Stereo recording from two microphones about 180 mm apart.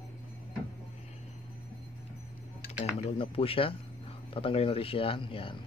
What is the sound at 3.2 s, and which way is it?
Speech, 30° left (ahead or behind).